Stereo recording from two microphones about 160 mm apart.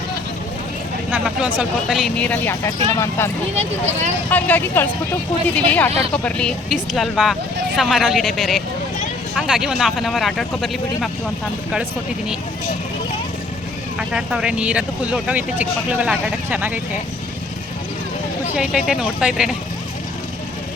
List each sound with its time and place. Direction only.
1.1 s speech: 5° right (ahead or behind); by 3.2 s 15° left (ahead or behind)
3.5 s speech: 45° right (ahead or behind)
4.3 s speech: 10° left (ahead or behind)
14.1 s speech: 5° right (ahead or behind)
18.5 s speech: 5° right (ahead or behind)